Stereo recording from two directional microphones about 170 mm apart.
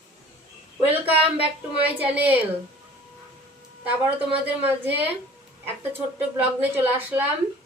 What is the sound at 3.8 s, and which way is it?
A woman's voice, 10° right (ahead or behind).